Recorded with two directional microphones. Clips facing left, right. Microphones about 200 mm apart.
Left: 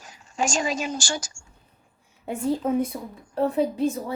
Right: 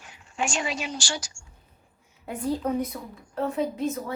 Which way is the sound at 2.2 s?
25° left (ahead or behind).